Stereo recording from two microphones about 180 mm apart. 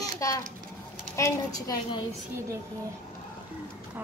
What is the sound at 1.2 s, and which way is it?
Speech, 20° left (ahead or behind).